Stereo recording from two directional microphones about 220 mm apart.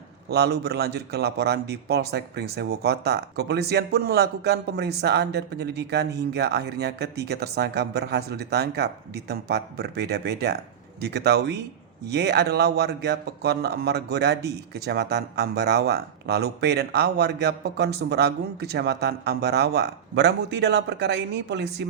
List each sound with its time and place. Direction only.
0.3 s speech: 50° right (ahead or behind)